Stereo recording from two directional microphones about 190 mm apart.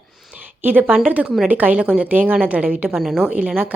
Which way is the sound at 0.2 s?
5° right (ahead or behind).